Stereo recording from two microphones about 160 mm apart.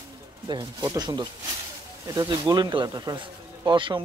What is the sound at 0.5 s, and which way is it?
Speech, 30° right (ahead or behind).